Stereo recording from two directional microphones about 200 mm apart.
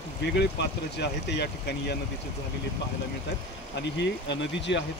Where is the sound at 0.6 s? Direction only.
60° left (ahead or behind).